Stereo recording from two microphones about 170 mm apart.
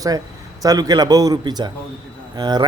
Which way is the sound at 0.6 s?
20° right (ahead or behind).